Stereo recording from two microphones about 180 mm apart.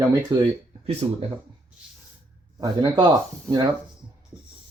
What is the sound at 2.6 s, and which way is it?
Speech, 20° right (ahead or behind).